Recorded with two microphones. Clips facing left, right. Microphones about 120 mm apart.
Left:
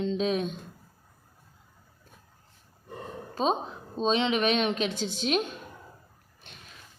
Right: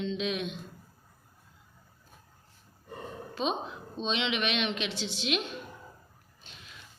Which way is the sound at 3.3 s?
40° left (ahead or behind).